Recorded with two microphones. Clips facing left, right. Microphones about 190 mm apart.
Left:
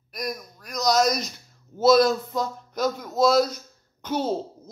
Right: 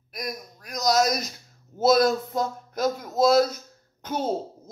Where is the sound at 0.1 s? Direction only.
Centre (ahead or behind).